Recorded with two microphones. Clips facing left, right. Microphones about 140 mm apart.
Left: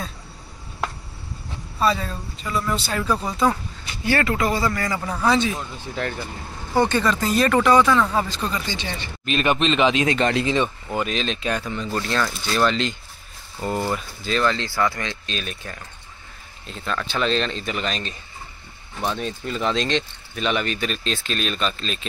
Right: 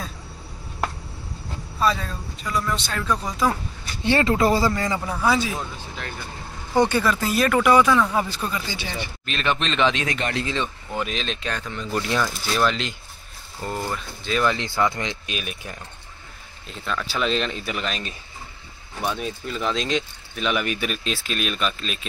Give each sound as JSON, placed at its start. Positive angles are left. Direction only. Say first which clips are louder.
{"t": 1.8, "sound": "speech", "louder": "left 1 dB", "side_deg": 0}
{"t": 4.0, "sound": "speech", "louder": "right 2 dB", "side_deg": -25}
{"t": 5.0, "sound": "speech", "louder": "left 4 dB", "side_deg": -5}
{"t": 6.8, "sound": "speech", "louder": "even", "side_deg": -10}
{"t": 9.3, "sound": "speech", "louder": "left 5 dB", "side_deg": 10}
{"t": 10.0, "sound": "speech", "louder": "left 6 dB", "side_deg": 35}
{"t": 10.3, "sound": "speech", "louder": "left 5 dB", "side_deg": 15}
{"t": 11.1, "sound": "speech", "louder": "left 4 dB", "side_deg": 0}
{"t": 11.9, "sound": "speech", "louder": "right 1 dB", "side_deg": -15}
{"t": 13.7, "sound": "speech", "louder": "left 4 dB", "side_deg": 10}
{"t": 14.3, "sound": "speech", "louder": "even", "side_deg": -15}
{"t": 16.8, "sound": "speech", "louder": "left 1 dB", "side_deg": -5}